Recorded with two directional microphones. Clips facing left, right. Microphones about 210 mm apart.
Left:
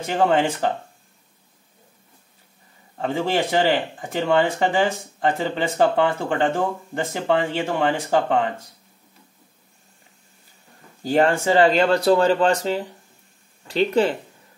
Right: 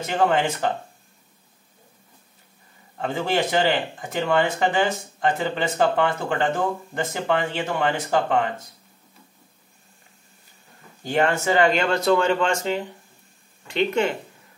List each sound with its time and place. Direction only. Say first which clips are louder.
0.0 s speech: left 2 dB; 30° left (ahead or behind)
3.0 s speech: left 1 dB; 30° left (ahead or behind)
11.1 s speech: left 3 dB; 35° left (ahead or behind)